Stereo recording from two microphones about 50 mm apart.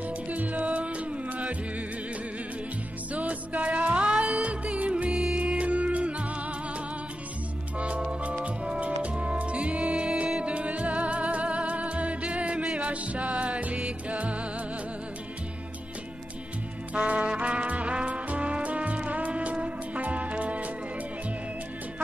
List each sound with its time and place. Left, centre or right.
0.3 s music: right
3.1 s music: right
16.9 s music: right